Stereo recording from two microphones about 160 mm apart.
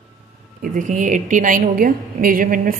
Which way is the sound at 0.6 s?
55° right (ahead or behind).